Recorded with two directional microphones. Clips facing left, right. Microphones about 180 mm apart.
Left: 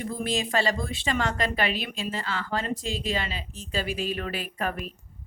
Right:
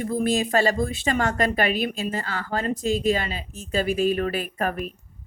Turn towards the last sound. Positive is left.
turn(degrees=-45)  # may be behind; listen again after turning